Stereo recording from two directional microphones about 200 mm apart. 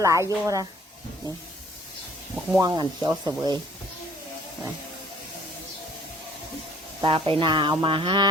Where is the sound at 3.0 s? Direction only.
20° right (ahead or behind).